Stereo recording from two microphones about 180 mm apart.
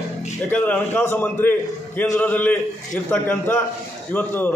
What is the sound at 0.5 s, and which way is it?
A man's voice, 10° left (ahead or behind).